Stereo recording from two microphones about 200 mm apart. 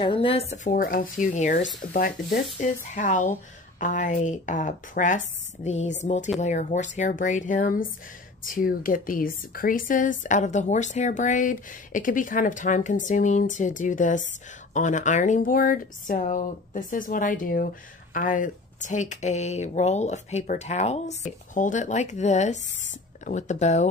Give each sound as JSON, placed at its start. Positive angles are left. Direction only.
{"t": 0.0, "sound": "a woman's voice", "side_deg": 25}
{"t": 2.6, "sound": "a woman's voice", "side_deg": 35}